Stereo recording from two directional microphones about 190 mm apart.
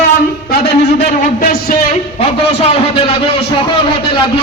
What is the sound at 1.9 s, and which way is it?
A man's voice, 30° left (ahead or behind).